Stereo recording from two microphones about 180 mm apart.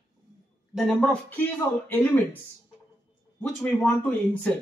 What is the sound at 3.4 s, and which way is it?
Speech, 10° left (ahead or behind).